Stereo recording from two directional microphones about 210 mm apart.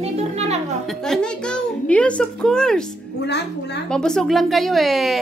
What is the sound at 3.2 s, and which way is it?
Speech, 55° left (ahead or behind).